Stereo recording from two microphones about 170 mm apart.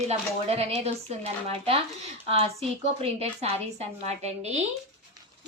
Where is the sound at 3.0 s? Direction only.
35° right (ahead or behind).